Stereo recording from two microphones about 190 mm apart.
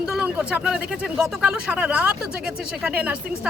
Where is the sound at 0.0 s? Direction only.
5° right (ahead or behind).